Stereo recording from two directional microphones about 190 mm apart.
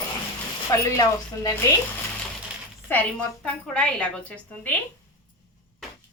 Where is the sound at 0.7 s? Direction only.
15° left (ahead or behind).